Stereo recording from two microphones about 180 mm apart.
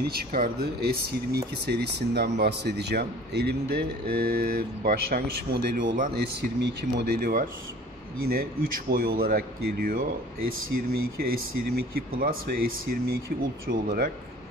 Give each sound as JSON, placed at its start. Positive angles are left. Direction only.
{"t": 0.1, "sound": "a man's voice", "side_deg": -55}